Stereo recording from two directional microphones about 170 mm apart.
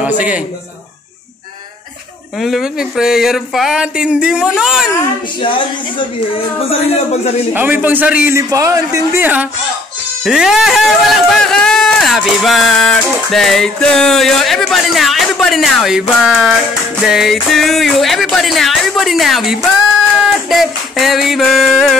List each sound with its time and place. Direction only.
0.0 s a man's voice: 10° right (ahead or behind)
2.3 s speech: centre (ahead or behind)
5.4 s speech: 30° left (ahead or behind)
7.8 s speech: 10° right (ahead or behind)
20.2 s music: centre (ahead or behind)